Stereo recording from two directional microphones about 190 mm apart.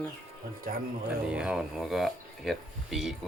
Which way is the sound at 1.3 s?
5° right (ahead or behind).